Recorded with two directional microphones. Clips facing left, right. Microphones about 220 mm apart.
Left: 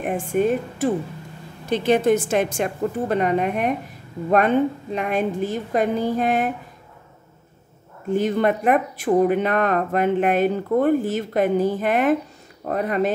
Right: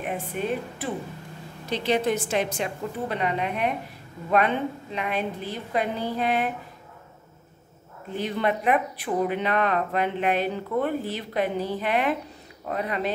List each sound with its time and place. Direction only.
0.0 s speech: 45° left (ahead or behind)
4.9 s speech: 45° left (ahead or behind)
8.1 s speech: 45° left (ahead or behind)